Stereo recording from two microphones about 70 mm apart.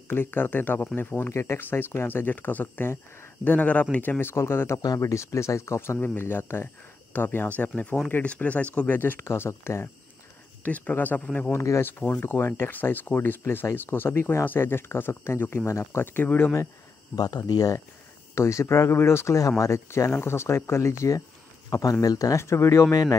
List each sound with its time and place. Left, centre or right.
0.1 s speech: left
6.1 s speech: left
9.2 s speech: left
10.6 s speech: left
11.5 s speech: left
12.0 s speech: left
17.1 s speech: left
18.3 s speech: left
22.0 s speech: left
22.4 s speech: left